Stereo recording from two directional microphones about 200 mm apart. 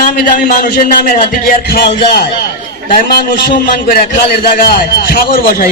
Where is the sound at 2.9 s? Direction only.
40° left (ahead or behind).